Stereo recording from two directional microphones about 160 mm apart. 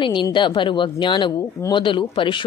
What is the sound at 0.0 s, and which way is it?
A man's voice, 30° left (ahead or behind).